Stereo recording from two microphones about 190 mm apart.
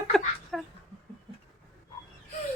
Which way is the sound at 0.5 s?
Centre (ahead or behind).